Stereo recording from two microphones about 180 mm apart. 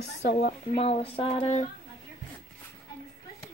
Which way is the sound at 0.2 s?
65° left (ahead or behind).